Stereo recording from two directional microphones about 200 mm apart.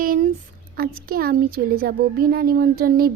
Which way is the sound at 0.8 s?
50° right (ahead or behind).